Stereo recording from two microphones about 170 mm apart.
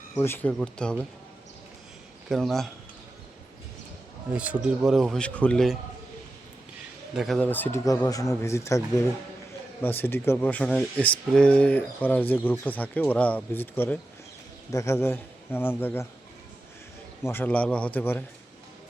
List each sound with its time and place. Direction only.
0.2 s speech: 10° left (ahead or behind)
2.3 s speech: centre (ahead or behind)
4.4 s speech: 5° right (ahead or behind)
7.2 s speech: 5° left (ahead or behind)
9.8 s speech: 10° left (ahead or behind)
17.2 s speech: 10° left (ahead or behind)